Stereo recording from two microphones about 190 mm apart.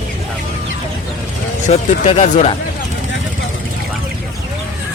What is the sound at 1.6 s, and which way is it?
Speech, 40° left (ahead or behind).